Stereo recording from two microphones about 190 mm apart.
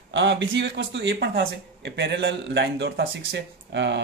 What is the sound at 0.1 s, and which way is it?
Speech, 70° right (ahead or behind).